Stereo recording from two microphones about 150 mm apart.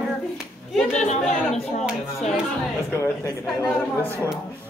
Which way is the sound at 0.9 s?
50° left (ahead or behind).